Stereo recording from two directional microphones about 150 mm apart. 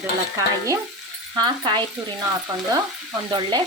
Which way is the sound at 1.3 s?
30° right (ahead or behind).